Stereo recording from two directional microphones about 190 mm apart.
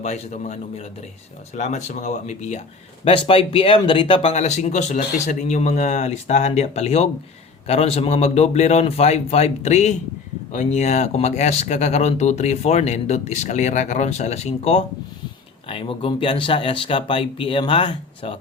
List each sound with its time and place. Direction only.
0.0 s speech: 35° left (ahead or behind)